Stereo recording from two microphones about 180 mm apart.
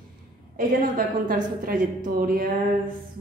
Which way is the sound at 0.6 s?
50° right (ahead or behind).